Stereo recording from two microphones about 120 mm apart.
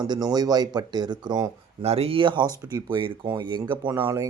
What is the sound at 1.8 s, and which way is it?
Speech, 55° right (ahead or behind).